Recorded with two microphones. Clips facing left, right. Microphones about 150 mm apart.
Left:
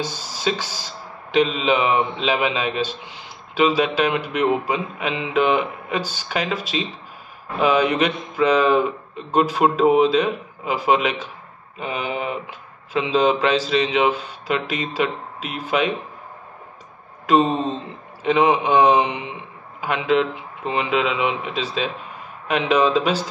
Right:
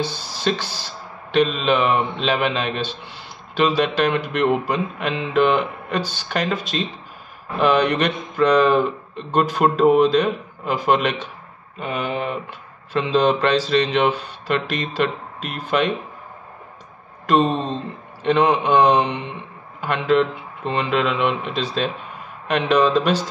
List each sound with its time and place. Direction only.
0.0 s a man's voice: 10° left (ahead or behind)
17.3 s a man's voice: 5° left (ahead or behind)